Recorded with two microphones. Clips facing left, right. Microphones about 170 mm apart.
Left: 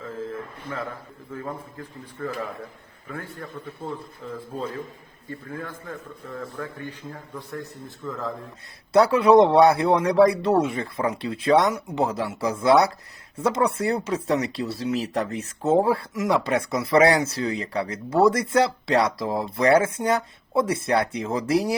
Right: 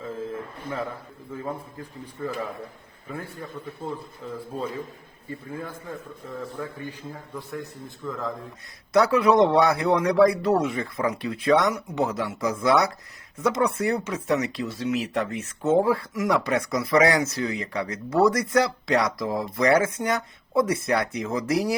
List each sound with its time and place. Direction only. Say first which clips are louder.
2.2 s a man's voice: even; 10° right (ahead or behind)
7.1 s a man's voice: even; centre (ahead or behind)
8.9 s speech: left 3 dB; 30° left (ahead or behind)